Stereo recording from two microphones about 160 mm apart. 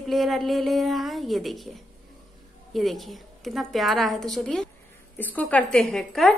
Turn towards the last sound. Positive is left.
turn(degrees=0)  # may be behind; listen again after turning